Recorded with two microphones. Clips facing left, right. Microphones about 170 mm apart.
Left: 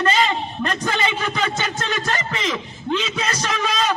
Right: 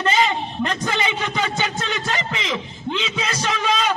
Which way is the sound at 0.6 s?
20° right (ahead or behind).